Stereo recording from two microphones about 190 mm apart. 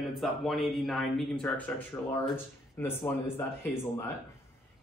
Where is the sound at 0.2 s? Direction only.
Centre (ahead or behind).